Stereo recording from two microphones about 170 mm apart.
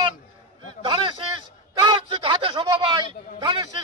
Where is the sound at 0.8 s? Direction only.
30° right (ahead or behind).